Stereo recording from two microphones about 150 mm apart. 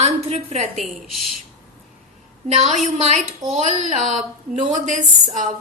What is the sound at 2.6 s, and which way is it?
A woman's voice, 45° right (ahead or behind).